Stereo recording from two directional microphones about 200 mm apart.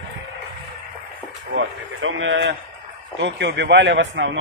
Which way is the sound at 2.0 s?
70° right (ahead or behind).